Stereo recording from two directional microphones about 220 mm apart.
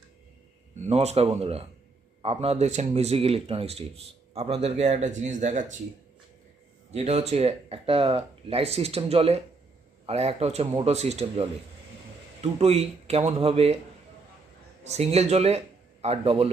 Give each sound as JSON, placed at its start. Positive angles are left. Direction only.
{"t": 0.9, "sound": "speech", "side_deg": -30}
{"t": 6.9, "sound": "speech", "side_deg": -30}
{"t": 14.8, "sound": "a man's voice", "side_deg": -30}